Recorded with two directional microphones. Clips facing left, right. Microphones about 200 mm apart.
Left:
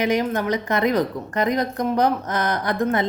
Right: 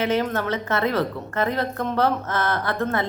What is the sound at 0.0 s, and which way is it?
A woman's voice, 15° left (ahead or behind).